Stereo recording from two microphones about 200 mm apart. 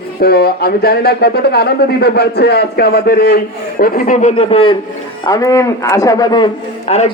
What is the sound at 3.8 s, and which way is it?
Speech, 40° left (ahead or behind).